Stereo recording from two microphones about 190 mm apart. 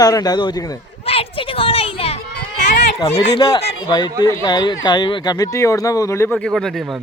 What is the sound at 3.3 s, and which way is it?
Speech, 20° left (ahead or behind).